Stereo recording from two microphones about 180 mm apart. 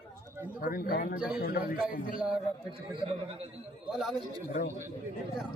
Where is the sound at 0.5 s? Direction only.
55° left (ahead or behind).